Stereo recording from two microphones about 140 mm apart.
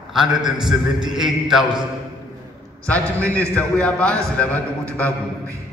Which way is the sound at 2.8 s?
10° left (ahead or behind).